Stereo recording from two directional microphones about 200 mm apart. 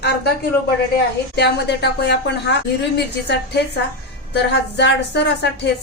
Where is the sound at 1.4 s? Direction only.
55° left (ahead or behind).